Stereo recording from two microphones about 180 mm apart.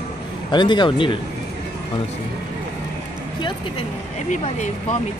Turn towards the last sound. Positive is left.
turn(degrees=40)  # may be behind; listen again after turning